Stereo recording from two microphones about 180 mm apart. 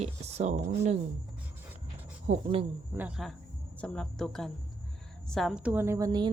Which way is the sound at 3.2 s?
Centre (ahead or behind).